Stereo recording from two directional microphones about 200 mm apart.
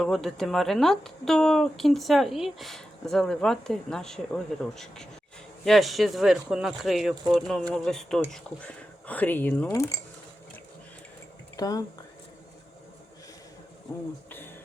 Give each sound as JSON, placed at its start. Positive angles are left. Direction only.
{"t": 0.0, "sound": "speech", "side_deg": 0}
{"t": 11.5, "sound": "speech", "side_deg": 20}
{"t": 14.3, "sound": "a sound", "side_deg": 10}